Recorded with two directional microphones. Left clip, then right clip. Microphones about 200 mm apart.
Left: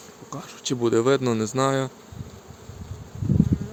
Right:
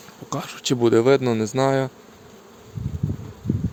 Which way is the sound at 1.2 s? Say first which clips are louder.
Right 2 dB; 10° right (ahead or behind).